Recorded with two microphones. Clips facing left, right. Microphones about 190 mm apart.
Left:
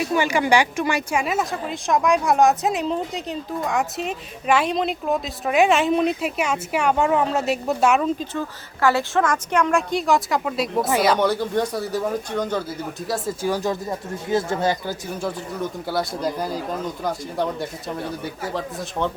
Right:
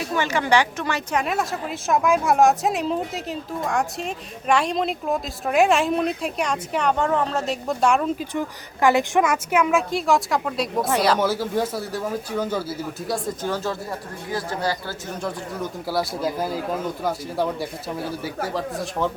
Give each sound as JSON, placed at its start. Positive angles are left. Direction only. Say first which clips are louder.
{"t": 0.1, "sound": "speech", "louder": "left 1 dB", "side_deg": 15}
{"t": 8.2, "sound": "speech", "louder": "right 1 dB", "side_deg": -15}
{"t": 13.1, "sound": "speech", "louder": "left 4 dB", "side_deg": 10}
{"t": 15.2, "sound": "speech", "louder": "left 1 dB", "side_deg": 0}